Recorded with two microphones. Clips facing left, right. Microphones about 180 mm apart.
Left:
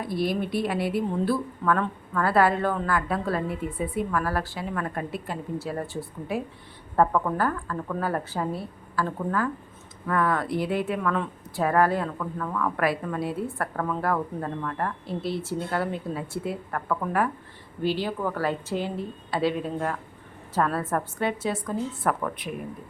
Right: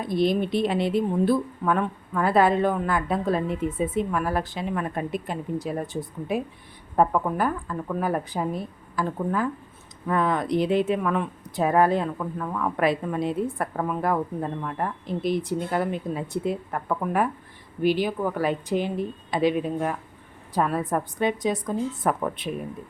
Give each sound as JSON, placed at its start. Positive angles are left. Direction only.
{"t": 0.0, "sound": "a woman's voice", "side_deg": -20}